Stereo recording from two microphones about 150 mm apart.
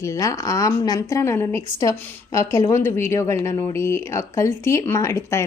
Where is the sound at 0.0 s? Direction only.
20° left (ahead or behind).